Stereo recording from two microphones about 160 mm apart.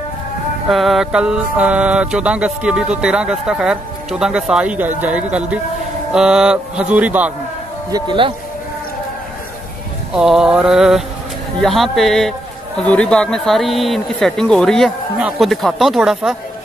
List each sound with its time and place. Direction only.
0.7 s music: centre (ahead or behind)
6.1 s speech: 5° right (ahead or behind)
7.9 s speech: 30° right (ahead or behind)
10.1 s music: 5° right (ahead or behind)